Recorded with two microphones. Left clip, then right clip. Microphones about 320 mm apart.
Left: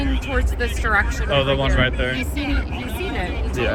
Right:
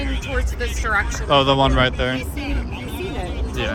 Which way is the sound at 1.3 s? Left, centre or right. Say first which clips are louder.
Right 4 dB; centre.